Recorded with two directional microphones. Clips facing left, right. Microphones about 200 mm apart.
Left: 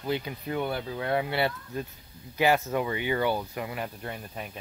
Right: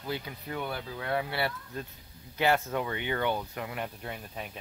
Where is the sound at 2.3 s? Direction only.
10° left (ahead or behind).